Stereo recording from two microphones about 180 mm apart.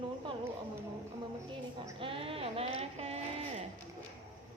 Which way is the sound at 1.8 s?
30° right (ahead or behind).